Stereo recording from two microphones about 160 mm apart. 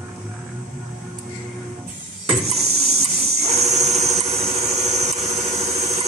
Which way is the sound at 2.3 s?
40° right (ahead or behind).